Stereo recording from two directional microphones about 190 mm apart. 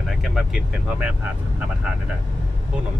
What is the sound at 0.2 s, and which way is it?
Speech, centre (ahead or behind).